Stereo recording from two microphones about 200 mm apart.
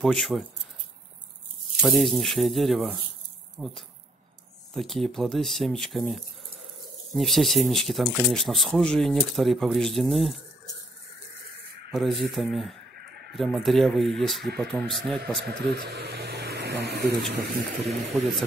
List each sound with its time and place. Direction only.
0.0 s speech: centre (ahead or behind)
1.8 s speech: centre (ahead or behind)
11.9 s speech: centre (ahead or behind)
15.9 s vehicle: 55° right (ahead or behind)
17.5 s speech: centre (ahead or behind)